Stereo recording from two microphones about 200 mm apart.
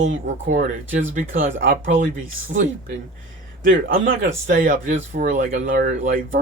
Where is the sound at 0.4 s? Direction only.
40° right (ahead or behind).